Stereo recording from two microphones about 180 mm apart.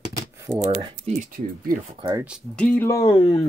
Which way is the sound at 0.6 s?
45° right (ahead or behind).